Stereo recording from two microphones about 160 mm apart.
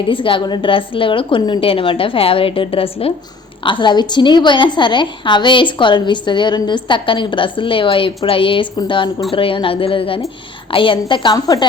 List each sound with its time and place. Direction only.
0.0 s a woman's voice: 30° left (ahead or behind)